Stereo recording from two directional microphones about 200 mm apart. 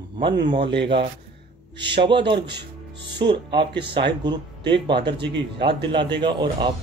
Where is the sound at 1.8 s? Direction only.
60° right (ahead or behind).